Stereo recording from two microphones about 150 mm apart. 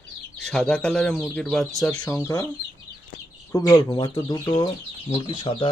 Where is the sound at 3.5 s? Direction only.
20° left (ahead or behind).